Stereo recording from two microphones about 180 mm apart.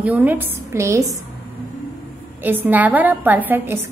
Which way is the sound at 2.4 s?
10° right (ahead or behind).